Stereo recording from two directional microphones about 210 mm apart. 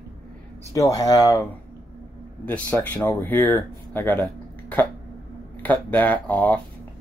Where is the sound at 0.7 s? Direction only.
15° left (ahead or behind).